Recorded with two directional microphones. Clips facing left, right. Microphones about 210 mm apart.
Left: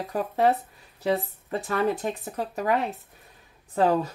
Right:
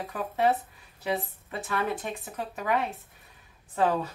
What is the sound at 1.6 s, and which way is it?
Speech, 40° left (ahead or behind).